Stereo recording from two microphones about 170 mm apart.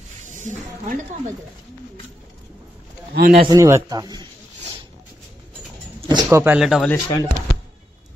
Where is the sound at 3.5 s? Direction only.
20° right (ahead or behind).